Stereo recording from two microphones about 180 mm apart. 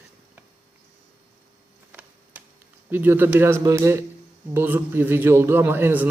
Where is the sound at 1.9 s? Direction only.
10° right (ahead or behind).